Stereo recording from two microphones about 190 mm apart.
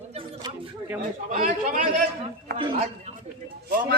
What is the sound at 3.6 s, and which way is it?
Speech, 50° right (ahead or behind).